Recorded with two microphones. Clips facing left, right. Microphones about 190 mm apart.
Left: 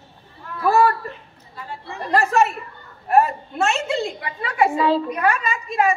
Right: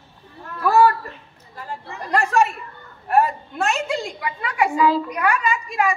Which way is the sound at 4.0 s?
30° left (ahead or behind).